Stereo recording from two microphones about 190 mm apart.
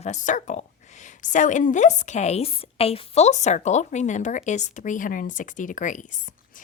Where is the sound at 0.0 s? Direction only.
40° left (ahead or behind).